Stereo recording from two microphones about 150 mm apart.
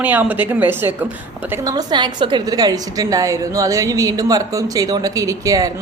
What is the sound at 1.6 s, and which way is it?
A woman's voice, 25° right (ahead or behind).